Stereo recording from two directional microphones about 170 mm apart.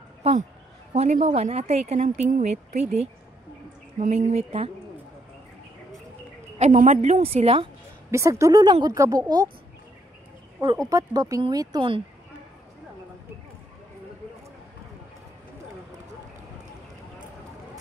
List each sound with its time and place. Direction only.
0.2 s a woman's voice: 40° right (ahead or behind)
6.6 s a woman's voice: 45° right (ahead or behind)
8.1 s speech: 15° right (ahead or behind)
10.9 s speech: 20° right (ahead or behind)